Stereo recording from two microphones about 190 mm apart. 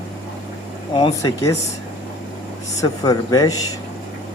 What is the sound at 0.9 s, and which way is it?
Speech, 20° left (ahead or behind).